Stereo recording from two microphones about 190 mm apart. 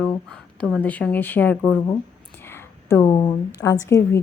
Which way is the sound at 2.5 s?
10° left (ahead or behind).